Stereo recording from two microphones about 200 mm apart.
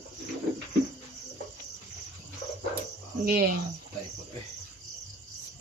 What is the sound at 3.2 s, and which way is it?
Speech, 45° right (ahead or behind).